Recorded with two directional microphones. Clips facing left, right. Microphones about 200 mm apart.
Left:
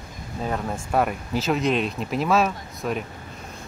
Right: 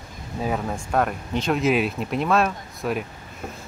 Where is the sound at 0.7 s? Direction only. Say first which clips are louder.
Even; 5° left (ahead or behind).